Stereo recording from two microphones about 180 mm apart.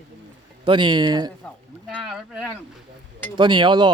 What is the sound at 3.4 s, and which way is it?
Speech, 25° right (ahead or behind).